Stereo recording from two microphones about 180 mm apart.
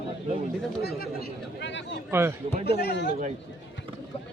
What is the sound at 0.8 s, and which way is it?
Speech, 60° left (ahead or behind).